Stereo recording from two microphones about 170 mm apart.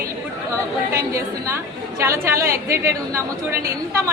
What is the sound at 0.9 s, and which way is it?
A woman's voice, 15° right (ahead or behind).